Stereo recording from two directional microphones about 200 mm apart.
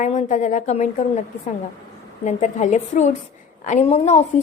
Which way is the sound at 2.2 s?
35° left (ahead or behind).